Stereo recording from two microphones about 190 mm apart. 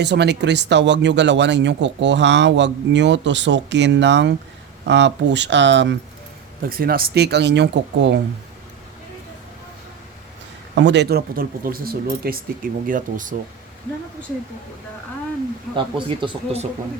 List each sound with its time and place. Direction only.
0.0 s speech: 60° right (ahead or behind)
6.7 s speech: 50° right (ahead or behind)
10.8 s speech: 65° right (ahead or behind); by 13.3 s 45° right (ahead or behind)
15.7 s speech: 25° right (ahead or behind)